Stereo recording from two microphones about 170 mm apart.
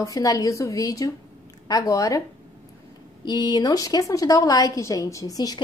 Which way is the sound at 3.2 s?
25° left (ahead or behind).